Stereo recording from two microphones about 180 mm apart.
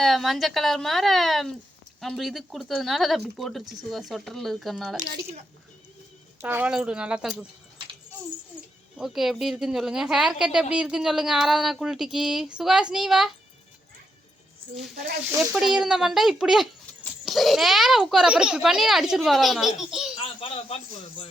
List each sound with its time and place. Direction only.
0.0 s a woman's voice: centre (ahead or behind)
6.4 s a woman's voice: 10° right (ahead or behind)
9.0 s a woman's voice: centre (ahead or behind)
15.4 s a woman's voice: centre (ahead or behind)
20.2 s a man's voice: 35° left (ahead or behind)